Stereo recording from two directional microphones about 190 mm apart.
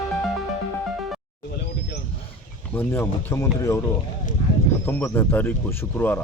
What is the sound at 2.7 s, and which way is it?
Speech, 10° left (ahead or behind).